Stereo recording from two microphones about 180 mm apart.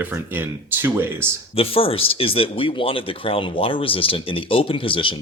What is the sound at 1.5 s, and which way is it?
Speech, 30° left (ahead or behind).